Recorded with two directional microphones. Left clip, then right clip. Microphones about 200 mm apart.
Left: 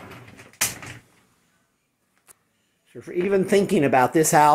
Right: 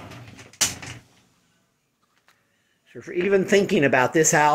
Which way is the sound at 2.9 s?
10° left (ahead or behind).